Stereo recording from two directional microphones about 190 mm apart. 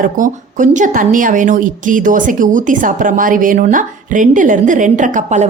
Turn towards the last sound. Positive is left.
turn(degrees=-40)  # may be behind; listen again after turning